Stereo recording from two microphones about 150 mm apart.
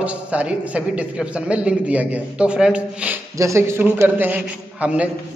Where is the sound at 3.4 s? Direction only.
20° right (ahead or behind).